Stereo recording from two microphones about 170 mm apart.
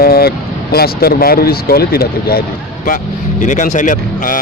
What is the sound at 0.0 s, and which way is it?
Speech, 65° left (ahead or behind).